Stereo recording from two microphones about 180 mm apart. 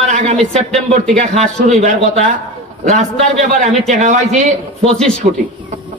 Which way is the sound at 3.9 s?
40° right (ahead or behind).